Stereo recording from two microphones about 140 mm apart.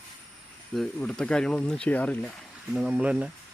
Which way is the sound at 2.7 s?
5° right (ahead or behind).